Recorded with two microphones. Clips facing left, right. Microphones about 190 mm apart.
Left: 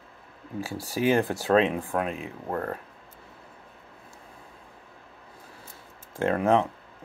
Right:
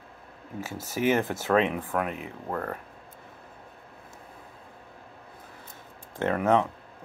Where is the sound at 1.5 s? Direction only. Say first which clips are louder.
Left 2 dB; 30° left (ahead or behind).